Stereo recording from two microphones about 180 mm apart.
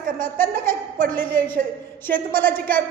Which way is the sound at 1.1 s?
10° left (ahead or behind).